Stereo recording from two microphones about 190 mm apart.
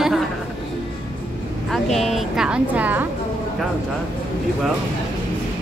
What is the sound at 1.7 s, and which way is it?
A woman's voice, centre (ahead or behind).